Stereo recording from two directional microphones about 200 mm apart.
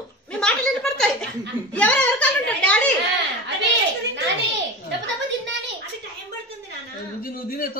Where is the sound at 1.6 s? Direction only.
5° left (ahead or behind).